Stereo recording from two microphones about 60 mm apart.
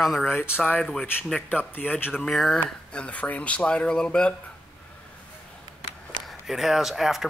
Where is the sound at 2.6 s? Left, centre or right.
Left.